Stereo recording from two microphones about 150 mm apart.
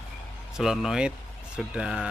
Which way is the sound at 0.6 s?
5° right (ahead or behind).